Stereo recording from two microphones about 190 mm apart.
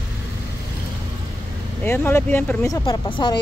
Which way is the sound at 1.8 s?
10° left (ahead or behind).